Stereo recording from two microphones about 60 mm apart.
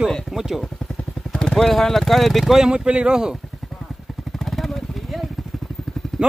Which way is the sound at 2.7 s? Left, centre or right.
Centre.